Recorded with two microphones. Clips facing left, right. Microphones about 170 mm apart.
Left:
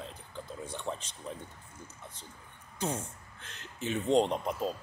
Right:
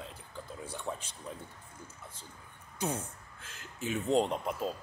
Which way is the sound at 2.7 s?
10° right (ahead or behind).